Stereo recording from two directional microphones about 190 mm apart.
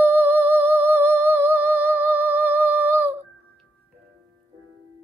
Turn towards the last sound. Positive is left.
turn(degrees=-10)  # may be behind; listen again after turning